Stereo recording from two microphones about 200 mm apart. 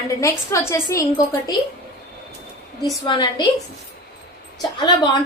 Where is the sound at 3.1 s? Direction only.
25° left (ahead or behind).